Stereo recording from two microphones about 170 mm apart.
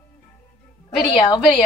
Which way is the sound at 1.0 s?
25° left (ahead or behind).